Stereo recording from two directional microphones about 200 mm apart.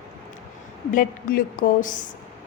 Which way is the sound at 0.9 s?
45° left (ahead or behind).